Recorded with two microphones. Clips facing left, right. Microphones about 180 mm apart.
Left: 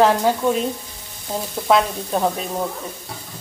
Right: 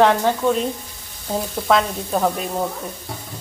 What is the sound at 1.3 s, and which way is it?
Speech, 10° right (ahead or behind).